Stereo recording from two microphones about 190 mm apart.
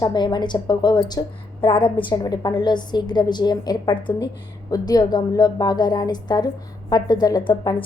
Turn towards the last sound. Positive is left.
turn(degrees=20)  # may be behind; listen again after turning